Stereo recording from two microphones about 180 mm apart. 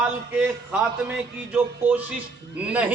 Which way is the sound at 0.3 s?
5° right (ahead or behind).